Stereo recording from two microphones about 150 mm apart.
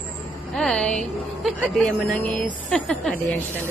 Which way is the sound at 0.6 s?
5° left (ahead or behind).